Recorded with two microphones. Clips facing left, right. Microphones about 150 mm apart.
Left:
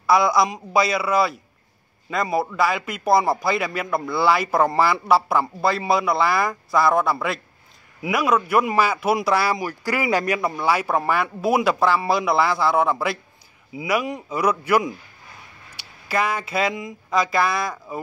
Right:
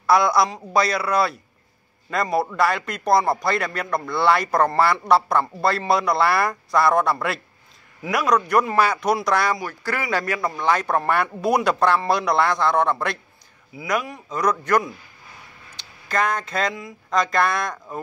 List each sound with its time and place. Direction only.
0.0 s a man's voice: centre (ahead or behind)
13.7 s a man's voice: 20° left (ahead or behind)
15.7 s a sound: 10° left (ahead or behind)
17.1 s a man's voice: 5° left (ahead or behind)